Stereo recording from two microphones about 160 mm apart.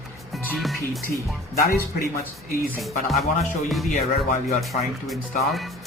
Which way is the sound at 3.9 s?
45° left (ahead or behind).